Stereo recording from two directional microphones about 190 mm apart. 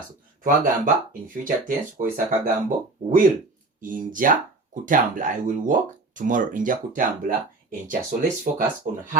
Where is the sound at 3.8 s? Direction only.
45° right (ahead or behind).